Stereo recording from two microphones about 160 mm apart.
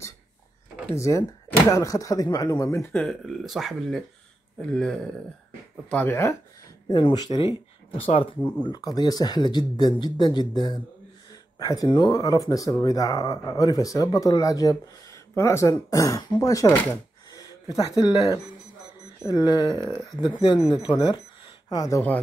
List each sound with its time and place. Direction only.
0.9 s speech: 20° left (ahead or behind)
6.9 s speech: 30° left (ahead or behind)
8.4 s speech: 10° left (ahead or behind)
8.6 s speech: 25° left (ahead or behind)